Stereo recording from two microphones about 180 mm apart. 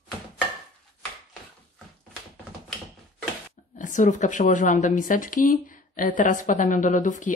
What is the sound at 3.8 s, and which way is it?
Speech, 45° left (ahead or behind).